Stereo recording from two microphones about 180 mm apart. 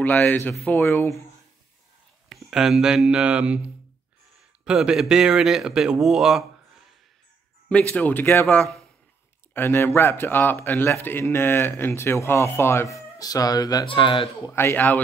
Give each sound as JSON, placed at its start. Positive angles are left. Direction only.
{"t": 0.0, "sound": "speech", "side_deg": 10}
{"t": 2.2, "sound": "speech", "side_deg": 0}
{"t": 7.9, "sound": "speech", "side_deg": 10}
{"t": 14.5, "sound": "speech", "side_deg": 15}